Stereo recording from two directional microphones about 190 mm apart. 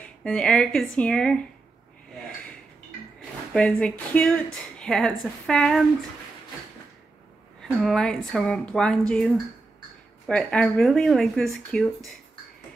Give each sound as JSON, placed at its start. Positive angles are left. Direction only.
{"t": 0.2, "sound": "a woman's voice", "side_deg": 5}
{"t": 3.5, "sound": "a woman's voice", "side_deg": 5}
{"t": 7.6, "sound": "a woman's voice", "side_deg": 5}